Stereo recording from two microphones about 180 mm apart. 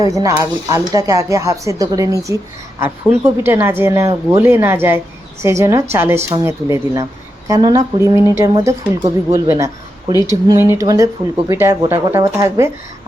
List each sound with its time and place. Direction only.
0.0 s speech: 20° right (ahead or behind)